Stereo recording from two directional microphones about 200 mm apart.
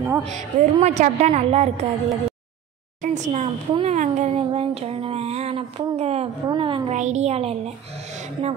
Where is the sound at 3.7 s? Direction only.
35° right (ahead or behind).